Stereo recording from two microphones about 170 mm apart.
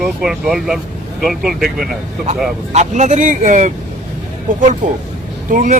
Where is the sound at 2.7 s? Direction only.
45° right (ahead or behind).